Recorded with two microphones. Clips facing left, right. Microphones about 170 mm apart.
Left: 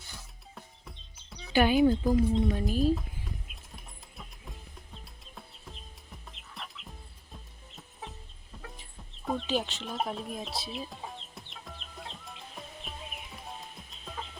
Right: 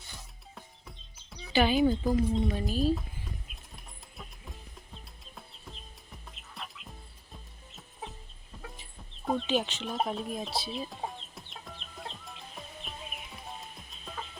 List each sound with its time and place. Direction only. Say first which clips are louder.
0.5 s music: left 1 dB; centre (ahead or behind)
2.6 s speech: left 1 dB; 15° left (ahead or behind)
5.2 s music: left 1 dB; centre (ahead or behind)
8.7 s chicken: even; centre (ahead or behind)